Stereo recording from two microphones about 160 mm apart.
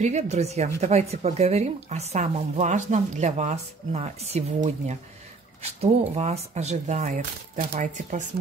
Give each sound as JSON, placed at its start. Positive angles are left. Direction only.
{"t": 0.0, "sound": "speech", "side_deg": -45}